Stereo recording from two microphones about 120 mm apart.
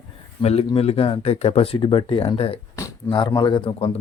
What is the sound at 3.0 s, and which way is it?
Speech, 40° left (ahead or behind).